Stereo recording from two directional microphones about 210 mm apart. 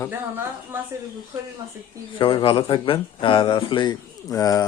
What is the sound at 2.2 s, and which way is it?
A man's voice, 25° left (ahead or behind).